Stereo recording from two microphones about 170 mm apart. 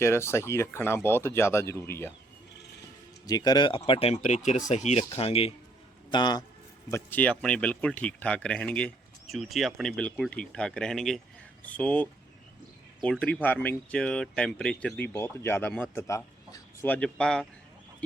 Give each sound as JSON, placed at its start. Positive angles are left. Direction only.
{"t": 0.0, "sound": "speech", "side_deg": 15}
{"t": 3.2, "sound": "a man's voice", "side_deg": 20}
{"t": 6.9, "sound": "speech", "side_deg": 10}